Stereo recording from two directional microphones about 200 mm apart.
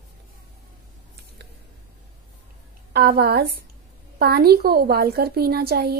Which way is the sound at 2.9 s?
55° right (ahead or behind).